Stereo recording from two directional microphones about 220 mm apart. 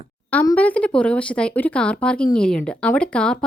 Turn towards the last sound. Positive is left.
turn(degrees=5)  # may be behind; listen again after turning